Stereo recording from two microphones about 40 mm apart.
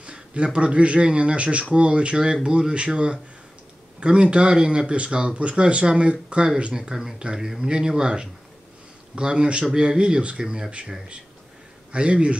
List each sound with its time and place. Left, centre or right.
0.0 s speech: right
6.7 s speech: centre
7.6 s speech: centre
11.9 s speech: right